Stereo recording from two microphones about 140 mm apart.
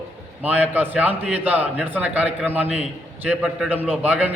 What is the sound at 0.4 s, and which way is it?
A man's voice, 10° right (ahead or behind).